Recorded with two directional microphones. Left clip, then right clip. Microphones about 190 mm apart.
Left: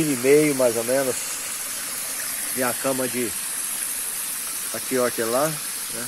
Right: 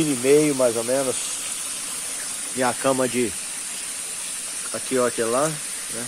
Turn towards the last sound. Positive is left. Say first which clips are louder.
# right 1 dB
turn(degrees=-5)  # may be behind; listen again after turning